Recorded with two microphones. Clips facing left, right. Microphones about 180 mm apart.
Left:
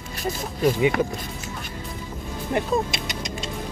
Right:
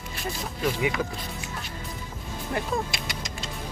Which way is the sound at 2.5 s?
20° left (ahead or behind).